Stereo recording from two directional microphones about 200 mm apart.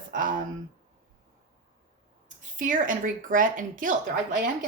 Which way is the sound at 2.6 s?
40° right (ahead or behind).